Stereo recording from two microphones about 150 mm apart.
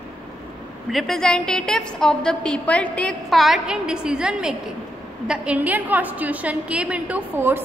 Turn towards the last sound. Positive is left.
turn(degrees=-15)  # may be behind; listen again after turning